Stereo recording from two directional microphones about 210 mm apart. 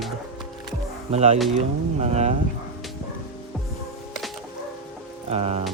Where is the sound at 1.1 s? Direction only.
30° right (ahead or behind).